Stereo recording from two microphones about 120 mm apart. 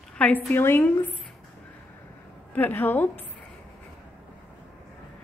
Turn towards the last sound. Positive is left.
turn(degrees=15)  # may be behind; listen again after turning